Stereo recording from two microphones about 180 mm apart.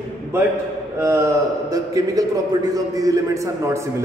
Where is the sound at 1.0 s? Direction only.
15° right (ahead or behind).